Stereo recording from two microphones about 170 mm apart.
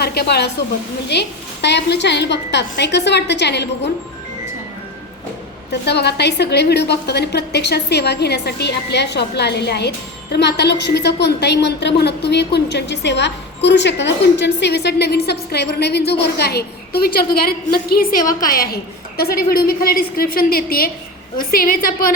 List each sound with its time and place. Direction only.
0.0 s a woman's voice: 70° left (ahead or behind)
5.8 s a woman's voice: 80° left; by 22.1 s 55° left (ahead or behind)